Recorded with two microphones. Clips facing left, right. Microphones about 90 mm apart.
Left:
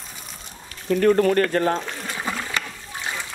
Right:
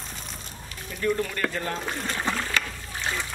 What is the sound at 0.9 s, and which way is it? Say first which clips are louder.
Speech: left 10 dB; 65° left (ahead or behind).